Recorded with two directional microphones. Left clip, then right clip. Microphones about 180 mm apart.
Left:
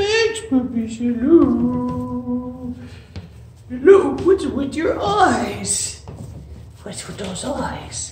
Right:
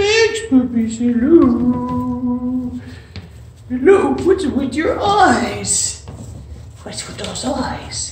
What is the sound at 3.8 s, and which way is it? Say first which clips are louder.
A man's voice: even; centre (ahead or behind).